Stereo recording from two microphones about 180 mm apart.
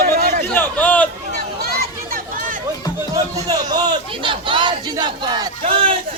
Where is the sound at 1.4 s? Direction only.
60° right (ahead or behind).